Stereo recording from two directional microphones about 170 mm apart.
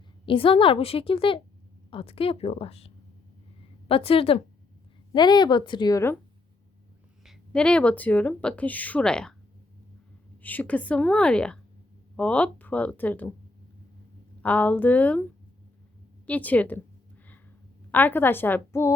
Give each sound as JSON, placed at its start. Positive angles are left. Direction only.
{"t": 0.3, "sound": "a woman's voice", "side_deg": 30}
{"t": 7.3, "sound": "speech", "side_deg": 5}
{"t": 10.4, "sound": "speech", "side_deg": 10}
{"t": 14.4, "sound": "speech", "side_deg": 10}
{"t": 17.9, "sound": "speech", "side_deg": 10}